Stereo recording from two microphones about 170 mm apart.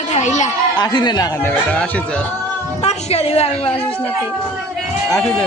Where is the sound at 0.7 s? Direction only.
25° left (ahead or behind); by 2.2 s 5° left (ahead or behind).